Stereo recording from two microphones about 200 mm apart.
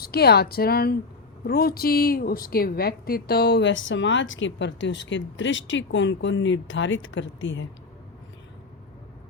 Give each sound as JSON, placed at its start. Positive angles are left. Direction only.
{"t": 0.0, "sound": "a woman's voice", "side_deg": 50}